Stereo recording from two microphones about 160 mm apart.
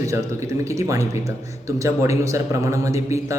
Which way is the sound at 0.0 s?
20° right (ahead or behind).